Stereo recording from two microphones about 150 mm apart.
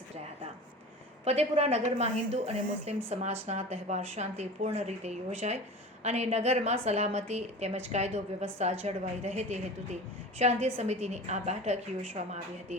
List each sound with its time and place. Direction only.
1.2 s a woman's voice: 45° right (ahead or behind)